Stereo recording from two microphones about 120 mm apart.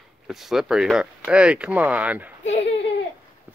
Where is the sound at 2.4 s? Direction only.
60° left (ahead or behind).